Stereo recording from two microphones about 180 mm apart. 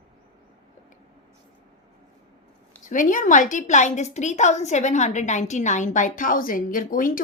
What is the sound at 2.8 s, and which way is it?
A woman's voice, 45° left (ahead or behind).